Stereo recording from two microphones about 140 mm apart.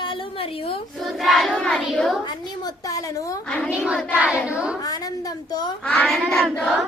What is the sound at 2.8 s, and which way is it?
Speech, 25° left (ahead or behind).